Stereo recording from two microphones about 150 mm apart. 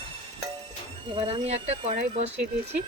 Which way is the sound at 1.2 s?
40° right (ahead or behind).